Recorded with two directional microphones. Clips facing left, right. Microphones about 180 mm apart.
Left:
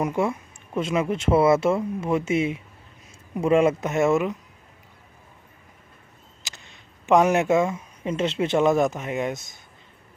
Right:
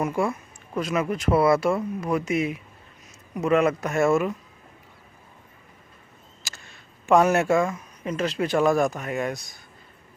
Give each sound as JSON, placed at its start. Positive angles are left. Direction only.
{"t": 0.0, "sound": "speech", "side_deg": 20}
{"t": 6.4, "sound": "speech", "side_deg": 20}